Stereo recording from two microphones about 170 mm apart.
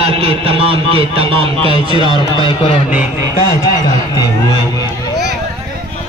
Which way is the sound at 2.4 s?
30° left (ahead or behind).